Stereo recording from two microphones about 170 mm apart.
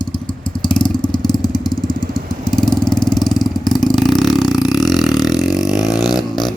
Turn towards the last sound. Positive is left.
turn(degrees=0)  # may be behind; listen again after turning